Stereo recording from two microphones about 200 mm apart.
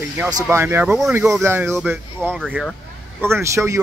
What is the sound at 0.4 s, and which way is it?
Speech, 15° right (ahead or behind).